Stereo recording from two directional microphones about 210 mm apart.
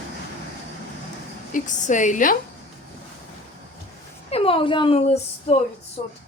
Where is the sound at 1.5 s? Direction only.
35° left (ahead or behind).